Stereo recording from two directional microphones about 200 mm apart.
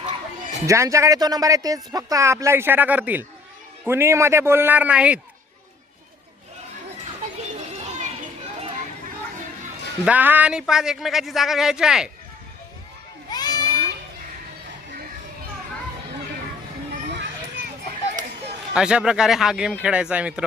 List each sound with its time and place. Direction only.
0.7 s speech: 15° right (ahead or behind)
7.9 s children playing: 35° right (ahead or behind)
10.1 s speech: 10° right (ahead or behind)
13.3 s a sound: 20° left (ahead or behind)
18.7 s speech: 5° right (ahead or behind)